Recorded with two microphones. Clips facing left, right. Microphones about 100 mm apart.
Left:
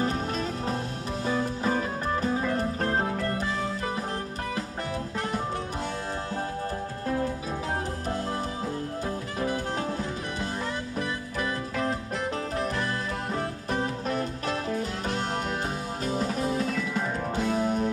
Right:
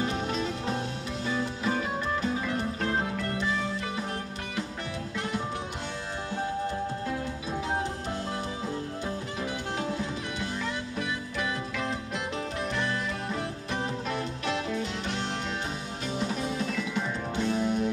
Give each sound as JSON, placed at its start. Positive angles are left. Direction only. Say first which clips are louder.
{"t": 0.0, "sound": "music", "louder": "left 1 dB", "side_deg": 40}
{"t": 13.7, "sound": "music", "louder": "left 3 dB", "side_deg": 40}